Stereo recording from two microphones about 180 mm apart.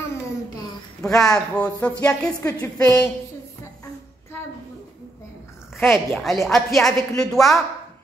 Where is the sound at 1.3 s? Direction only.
5° left (ahead or behind).